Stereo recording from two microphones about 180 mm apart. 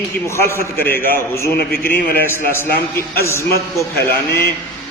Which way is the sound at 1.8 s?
15° left (ahead or behind).